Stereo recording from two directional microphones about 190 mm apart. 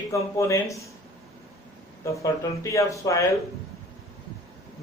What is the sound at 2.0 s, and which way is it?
A man's voice, 15° left (ahead or behind).